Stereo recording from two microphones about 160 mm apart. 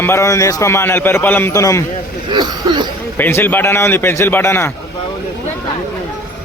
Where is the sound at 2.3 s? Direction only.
25° right (ahead or behind).